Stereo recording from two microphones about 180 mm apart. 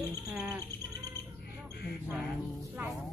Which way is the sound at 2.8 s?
10° right (ahead or behind).